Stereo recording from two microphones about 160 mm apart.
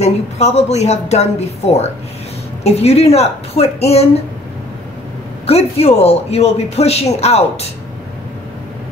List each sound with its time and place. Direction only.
0.0 s a man's voice: 45° left (ahead or behind)
5.5 s a man's voice: 40° left (ahead or behind)